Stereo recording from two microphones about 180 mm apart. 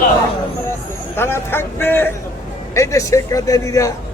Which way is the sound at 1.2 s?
10° left (ahead or behind).